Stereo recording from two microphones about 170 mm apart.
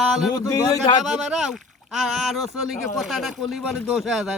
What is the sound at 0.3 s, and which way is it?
Speech, 25° left (ahead or behind).